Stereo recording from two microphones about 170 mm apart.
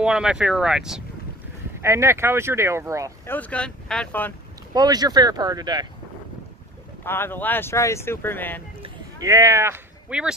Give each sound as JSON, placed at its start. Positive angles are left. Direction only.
{"t": 0.0, "sound": "speech", "side_deg": -5}
{"t": 1.8, "sound": "speech", "side_deg": -15}
{"t": 3.3, "sound": "speech", "side_deg": 10}
{"t": 4.7, "sound": "speech", "side_deg": -25}
{"t": 7.1, "sound": "speech", "side_deg": 15}
{"t": 9.2, "sound": "speech", "side_deg": -20}